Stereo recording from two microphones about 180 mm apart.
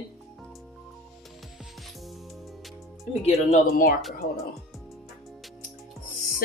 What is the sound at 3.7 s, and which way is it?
Speech, 55° left (ahead or behind).